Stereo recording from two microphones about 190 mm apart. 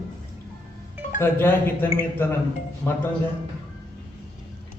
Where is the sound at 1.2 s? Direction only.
10° left (ahead or behind).